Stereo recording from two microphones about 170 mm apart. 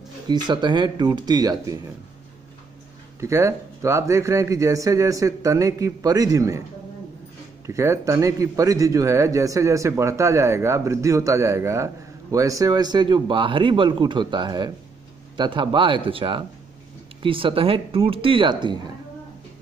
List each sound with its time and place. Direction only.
0.3 s a man's voice: 25° right (ahead or behind)
3.2 s a man's voice: 15° right (ahead or behind)
7.6 s a man's voice: 15° right (ahead or behind)